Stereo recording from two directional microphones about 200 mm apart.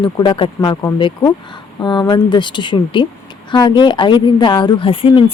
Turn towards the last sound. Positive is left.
turn(degrees=25)  # may be behind; listen again after turning